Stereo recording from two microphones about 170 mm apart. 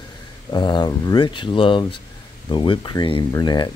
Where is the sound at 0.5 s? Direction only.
25° left (ahead or behind).